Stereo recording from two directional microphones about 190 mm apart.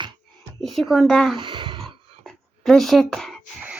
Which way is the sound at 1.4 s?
25° right (ahead or behind).